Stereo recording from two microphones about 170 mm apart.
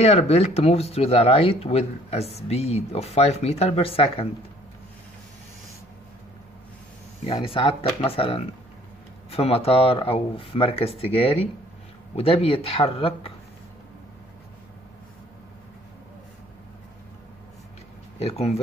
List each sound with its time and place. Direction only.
0.0 s speech: 40° left (ahead or behind)
7.2 s speech: 35° left (ahead or behind)
18.2 s speech: 35° left (ahead or behind)